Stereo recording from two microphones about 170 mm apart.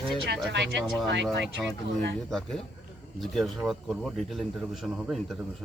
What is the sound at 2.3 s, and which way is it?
A man's voice, centre (ahead or behind).